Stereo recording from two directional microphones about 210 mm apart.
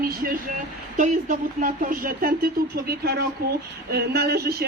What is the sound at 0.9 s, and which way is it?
A woman's voice, 35° right (ahead or behind).